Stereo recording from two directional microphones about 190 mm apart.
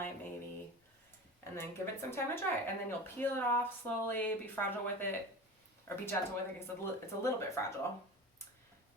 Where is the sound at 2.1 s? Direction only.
10° left (ahead or behind).